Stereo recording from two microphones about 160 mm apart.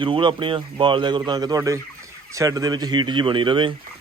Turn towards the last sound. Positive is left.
turn(degrees=-30)  # may be behind; listen again after turning